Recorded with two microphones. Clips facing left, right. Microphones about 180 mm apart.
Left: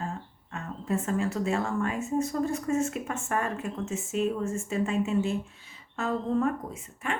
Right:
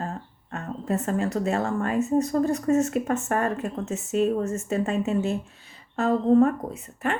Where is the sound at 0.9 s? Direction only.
40° right (ahead or behind); by 7.1 s 65° right (ahead or behind).